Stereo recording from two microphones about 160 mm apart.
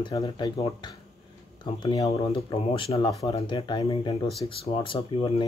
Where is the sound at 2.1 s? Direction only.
35° left (ahead or behind).